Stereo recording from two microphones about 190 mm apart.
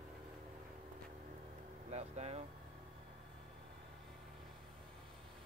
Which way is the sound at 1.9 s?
35° right (ahead or behind).